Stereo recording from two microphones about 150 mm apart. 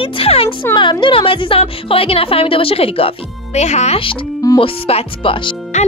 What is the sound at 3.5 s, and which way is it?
Speech, 50° left (ahead or behind).